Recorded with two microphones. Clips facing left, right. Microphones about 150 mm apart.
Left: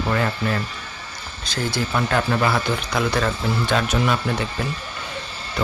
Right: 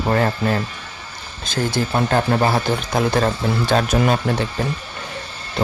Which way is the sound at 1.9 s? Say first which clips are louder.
Right 3 dB; 35° right (ahead or behind).